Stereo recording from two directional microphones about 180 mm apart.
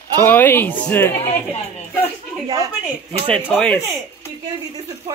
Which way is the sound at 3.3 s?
5° left (ahead or behind).